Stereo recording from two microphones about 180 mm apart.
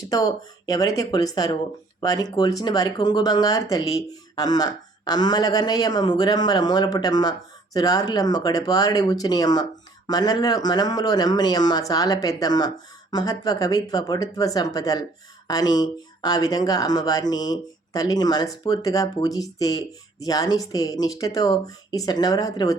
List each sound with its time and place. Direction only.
0.1 s speech: 20° left (ahead or behind)